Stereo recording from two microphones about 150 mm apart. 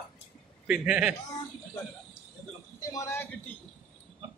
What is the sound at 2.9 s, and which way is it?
Speech, 20° left (ahead or behind).